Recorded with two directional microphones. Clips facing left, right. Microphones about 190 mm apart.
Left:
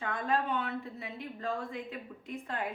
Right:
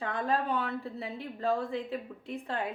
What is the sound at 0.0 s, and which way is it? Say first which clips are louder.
A woman's voice: right 1 dB; 35° right (ahead or behind).